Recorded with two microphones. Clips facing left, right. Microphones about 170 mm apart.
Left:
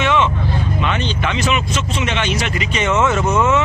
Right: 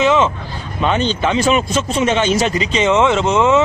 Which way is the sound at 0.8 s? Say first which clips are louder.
Right 10 dB; 35° right (ahead or behind).